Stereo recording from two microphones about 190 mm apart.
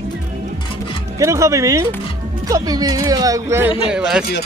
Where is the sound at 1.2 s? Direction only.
15° right (ahead or behind).